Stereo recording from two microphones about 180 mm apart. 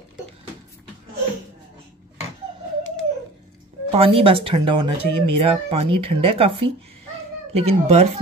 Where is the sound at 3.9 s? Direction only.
30° right (ahead or behind).